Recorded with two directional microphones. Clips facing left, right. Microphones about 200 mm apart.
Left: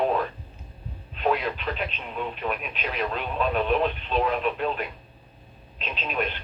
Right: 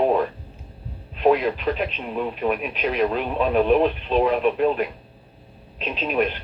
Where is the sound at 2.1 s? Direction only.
45° right (ahead or behind).